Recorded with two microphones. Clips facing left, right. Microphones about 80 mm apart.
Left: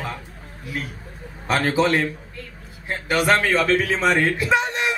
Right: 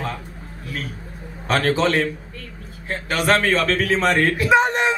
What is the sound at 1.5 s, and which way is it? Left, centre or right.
Speech, centre.